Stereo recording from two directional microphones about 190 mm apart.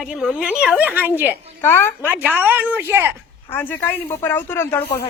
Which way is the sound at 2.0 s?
10° right (ahead or behind).